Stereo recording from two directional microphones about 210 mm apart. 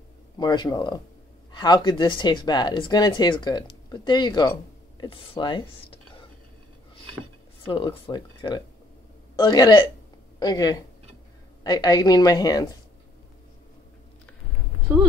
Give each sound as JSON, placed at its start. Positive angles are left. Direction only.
{"t": 0.4, "sound": "speech", "side_deg": 20}
{"t": 7.6, "sound": "speech", "side_deg": 25}